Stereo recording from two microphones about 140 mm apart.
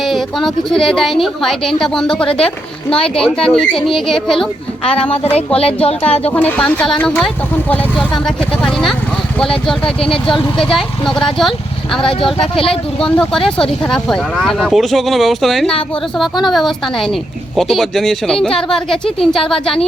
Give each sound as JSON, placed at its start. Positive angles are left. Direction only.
{"t": 0.0, "sound": "speech", "side_deg": 0}
{"t": 3.2, "sound": "speech", "side_deg": 5}
{"t": 5.5, "sound": "speech", "side_deg": 45}
{"t": 6.3, "sound": "a woman's voice", "side_deg": 10}
{"t": 12.5, "sound": "speech", "side_deg": 40}
{"t": 13.0, "sound": "speech", "side_deg": 5}